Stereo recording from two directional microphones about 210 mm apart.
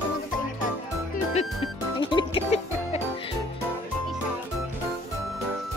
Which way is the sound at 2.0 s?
25° left (ahead or behind).